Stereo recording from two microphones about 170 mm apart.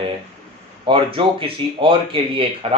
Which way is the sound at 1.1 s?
30° right (ahead or behind).